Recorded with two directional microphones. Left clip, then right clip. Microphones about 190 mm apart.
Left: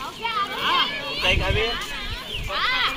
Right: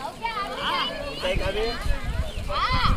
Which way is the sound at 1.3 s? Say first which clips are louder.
Left 4 dB; 50° right (ahead or behind).